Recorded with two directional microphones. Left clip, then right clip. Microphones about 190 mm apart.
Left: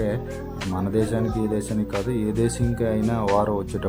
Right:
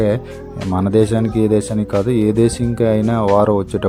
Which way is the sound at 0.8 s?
35° right (ahead or behind).